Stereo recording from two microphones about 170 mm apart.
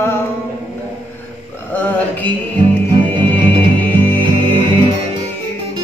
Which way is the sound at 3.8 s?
10° left (ahead or behind).